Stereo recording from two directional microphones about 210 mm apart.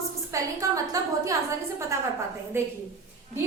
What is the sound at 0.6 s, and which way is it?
Speech, 15° right (ahead or behind).